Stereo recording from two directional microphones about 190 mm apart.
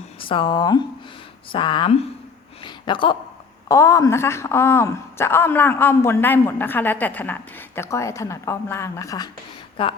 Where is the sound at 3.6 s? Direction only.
15° left (ahead or behind).